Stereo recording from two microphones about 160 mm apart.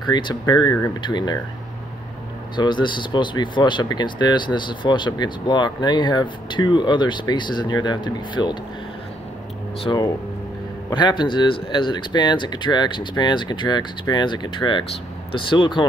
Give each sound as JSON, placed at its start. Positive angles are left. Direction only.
{"t": 0.0, "sound": "speech", "side_deg": 25}
{"t": 2.5, "sound": "speech", "side_deg": 30}
{"t": 9.9, "sound": "speech", "side_deg": 25}